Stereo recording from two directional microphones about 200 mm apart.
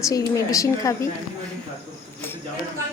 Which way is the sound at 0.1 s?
15° left (ahead or behind).